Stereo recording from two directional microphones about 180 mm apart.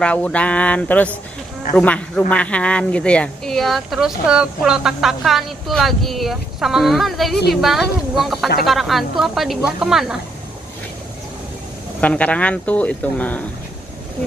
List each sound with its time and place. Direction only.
0.0 s a woman's voice: 5° left (ahead or behind)
12.0 s speech: 5° left (ahead or behind)